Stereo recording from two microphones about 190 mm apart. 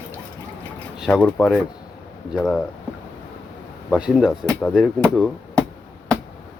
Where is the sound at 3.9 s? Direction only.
5° right (ahead or behind).